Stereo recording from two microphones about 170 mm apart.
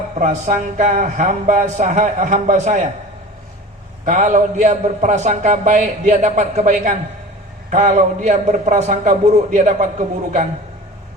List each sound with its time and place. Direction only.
0.2 s a man's voice: 50° right (ahead or behind)
4.0 s a man's voice: 45° right (ahead or behind)